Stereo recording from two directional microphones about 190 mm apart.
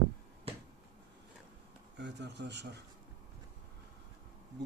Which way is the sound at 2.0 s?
65° right (ahead or behind).